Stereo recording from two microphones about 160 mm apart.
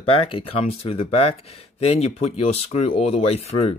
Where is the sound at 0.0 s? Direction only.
35° left (ahead or behind).